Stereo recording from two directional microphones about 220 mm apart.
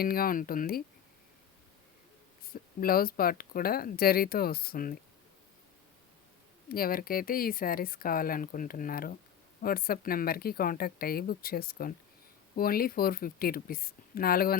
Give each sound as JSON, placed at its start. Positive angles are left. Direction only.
{"t": 0.0, "sound": "speech", "side_deg": 40}
{"t": 2.4, "sound": "speech", "side_deg": 40}
{"t": 6.7, "sound": "speech", "side_deg": 40}